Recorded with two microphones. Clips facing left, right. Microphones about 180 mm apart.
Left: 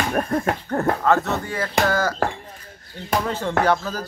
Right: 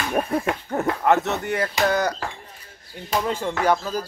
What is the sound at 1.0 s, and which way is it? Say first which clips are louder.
Speech: even; 20° right (ahead or behind).